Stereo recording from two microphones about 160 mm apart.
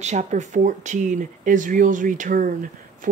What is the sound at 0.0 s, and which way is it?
Speech, 45° right (ahead or behind).